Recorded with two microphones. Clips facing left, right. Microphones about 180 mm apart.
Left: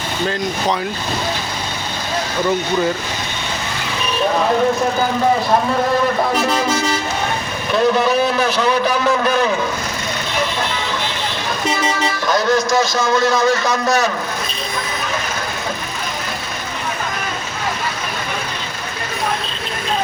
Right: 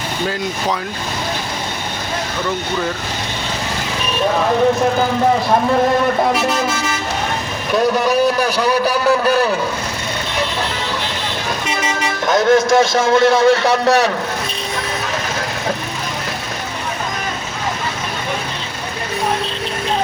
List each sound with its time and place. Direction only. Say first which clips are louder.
7.7 s speech: even; 10° right (ahead or behind)
12.2 s a man's voice: right 5 dB; 25° right (ahead or behind)